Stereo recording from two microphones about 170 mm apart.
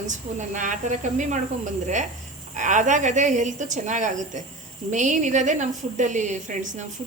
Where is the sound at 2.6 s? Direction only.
45° right (ahead or behind).